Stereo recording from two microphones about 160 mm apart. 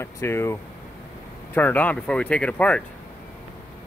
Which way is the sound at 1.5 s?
10° left (ahead or behind).